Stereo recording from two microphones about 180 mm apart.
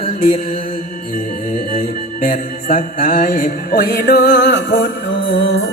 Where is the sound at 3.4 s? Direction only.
50° left (ahead or behind).